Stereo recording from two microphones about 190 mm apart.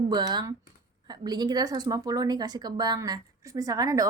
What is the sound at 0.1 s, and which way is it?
A woman's voice, 20° right (ahead or behind).